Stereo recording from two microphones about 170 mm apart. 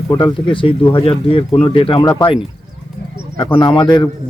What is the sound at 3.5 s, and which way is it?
Speech, 30° left (ahead or behind).